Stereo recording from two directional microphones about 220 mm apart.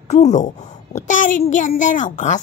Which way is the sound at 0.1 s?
30° left (ahead or behind).